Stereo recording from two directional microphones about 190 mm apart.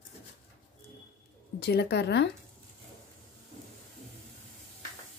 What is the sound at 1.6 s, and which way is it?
Speech, 60° left (ahead or behind).